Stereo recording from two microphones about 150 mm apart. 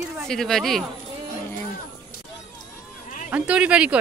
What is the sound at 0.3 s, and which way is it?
Speech, centre (ahead or behind).